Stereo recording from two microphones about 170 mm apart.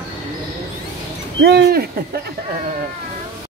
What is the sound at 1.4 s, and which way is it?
Speech, 75° right (ahead or behind).